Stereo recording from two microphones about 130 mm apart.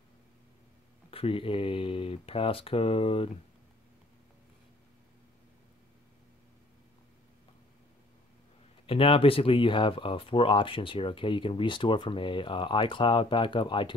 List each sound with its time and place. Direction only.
1.1 s speech: 45° left (ahead or behind)
8.8 s speech: 45° left (ahead or behind)